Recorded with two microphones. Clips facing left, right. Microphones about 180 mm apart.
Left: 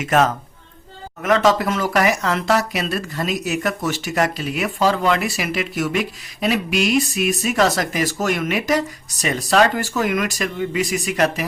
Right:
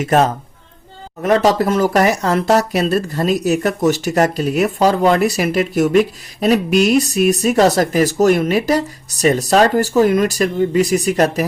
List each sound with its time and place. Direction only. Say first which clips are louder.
0.0 s speech: right 3 dB; 35° right (ahead or behind)